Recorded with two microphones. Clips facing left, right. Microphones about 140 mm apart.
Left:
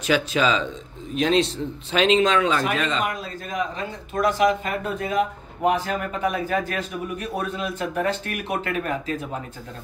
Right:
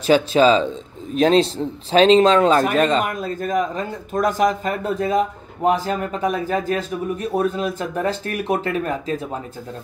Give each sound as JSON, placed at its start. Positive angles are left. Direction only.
{"t": 0.0, "sound": "speech", "side_deg": -30}